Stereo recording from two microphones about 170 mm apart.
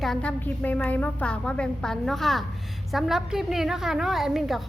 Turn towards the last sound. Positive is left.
turn(degrees=0)  # may be behind; listen again after turning